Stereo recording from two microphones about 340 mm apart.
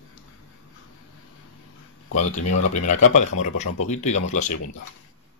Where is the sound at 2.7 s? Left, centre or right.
Left.